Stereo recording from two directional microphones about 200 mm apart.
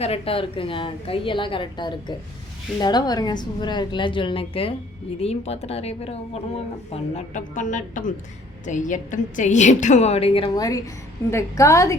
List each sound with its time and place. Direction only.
0.0 s a woman's voice: 30° left (ahead or behind)